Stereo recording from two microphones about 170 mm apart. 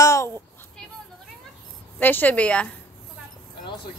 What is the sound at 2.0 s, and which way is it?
Speech, 10° left (ahead or behind).